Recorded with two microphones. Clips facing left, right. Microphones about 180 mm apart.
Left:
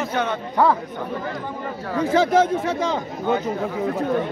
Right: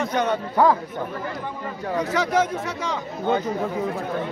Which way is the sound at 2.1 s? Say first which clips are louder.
Left 6 dB; 25° left (ahead or behind).